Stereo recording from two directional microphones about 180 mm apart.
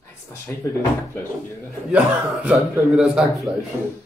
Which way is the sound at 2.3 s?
Centre (ahead or behind).